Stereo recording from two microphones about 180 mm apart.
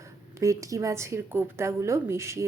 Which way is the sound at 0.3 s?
15° right (ahead or behind).